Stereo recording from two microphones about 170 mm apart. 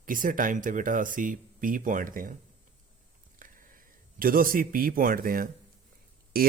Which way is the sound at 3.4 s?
55° right (ahead or behind).